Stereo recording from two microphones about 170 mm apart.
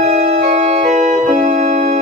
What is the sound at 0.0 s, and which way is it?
Organ, 40° right (ahead or behind).